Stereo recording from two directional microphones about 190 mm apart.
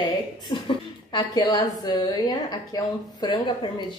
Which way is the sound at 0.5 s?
25° left (ahead or behind).